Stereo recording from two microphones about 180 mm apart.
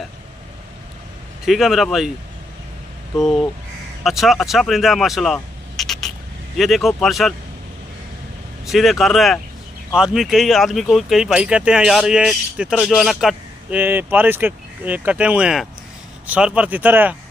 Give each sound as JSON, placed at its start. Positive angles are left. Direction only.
{"t": 1.4, "sound": "speech", "side_deg": 0}
{"t": 3.2, "sound": "speech", "side_deg": 0}
{"t": 8.6, "sound": "speech", "side_deg": 0}